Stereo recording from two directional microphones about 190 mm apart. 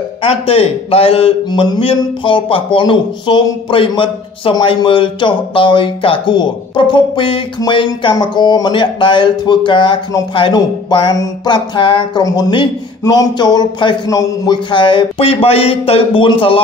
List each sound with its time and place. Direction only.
0.2 s speech: 30° left (ahead or behind)